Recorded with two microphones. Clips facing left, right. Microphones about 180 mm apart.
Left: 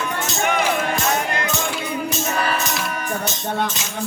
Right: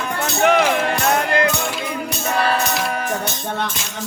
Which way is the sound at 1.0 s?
60° right (ahead or behind).